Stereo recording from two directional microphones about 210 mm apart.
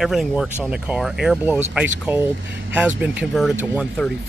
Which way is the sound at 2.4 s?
55° right (ahead or behind).